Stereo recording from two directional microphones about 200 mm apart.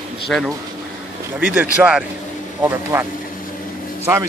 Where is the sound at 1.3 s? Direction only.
10° right (ahead or behind).